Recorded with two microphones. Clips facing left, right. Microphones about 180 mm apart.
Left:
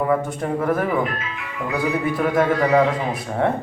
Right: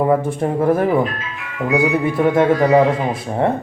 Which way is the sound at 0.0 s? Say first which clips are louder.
Right 5 dB; 30° right (ahead or behind).